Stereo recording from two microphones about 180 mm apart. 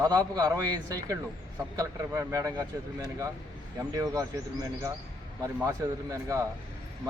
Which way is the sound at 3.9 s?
20° right (ahead or behind).